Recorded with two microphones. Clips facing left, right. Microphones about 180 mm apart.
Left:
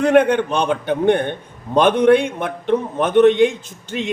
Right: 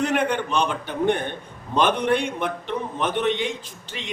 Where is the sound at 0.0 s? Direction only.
55° left (ahead or behind).